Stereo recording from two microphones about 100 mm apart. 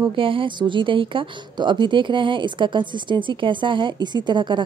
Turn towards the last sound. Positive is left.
turn(degrees=-50)  # may be behind; listen again after turning